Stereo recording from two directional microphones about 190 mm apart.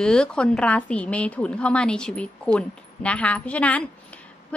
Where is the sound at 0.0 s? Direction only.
5° left (ahead or behind).